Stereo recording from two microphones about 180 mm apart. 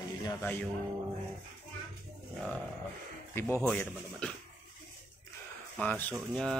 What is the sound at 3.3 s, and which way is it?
Speech, 10° left (ahead or behind).